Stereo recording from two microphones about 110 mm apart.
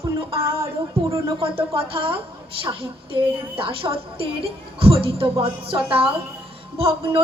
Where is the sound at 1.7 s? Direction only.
60° right (ahead or behind).